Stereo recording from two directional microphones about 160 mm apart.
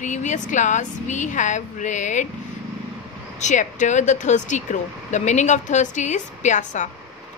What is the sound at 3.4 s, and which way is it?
Speech, 50° left (ahead or behind).